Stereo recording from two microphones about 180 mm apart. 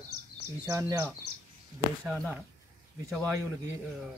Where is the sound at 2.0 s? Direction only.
5° left (ahead or behind).